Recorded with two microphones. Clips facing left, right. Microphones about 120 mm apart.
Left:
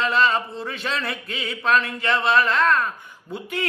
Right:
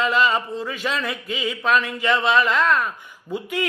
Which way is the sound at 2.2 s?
20° right (ahead or behind).